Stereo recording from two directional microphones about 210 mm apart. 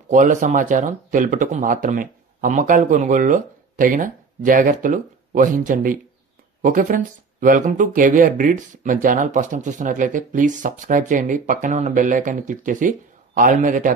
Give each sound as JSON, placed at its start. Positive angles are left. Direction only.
{"t": 0.1, "sound": "speech", "side_deg": -35}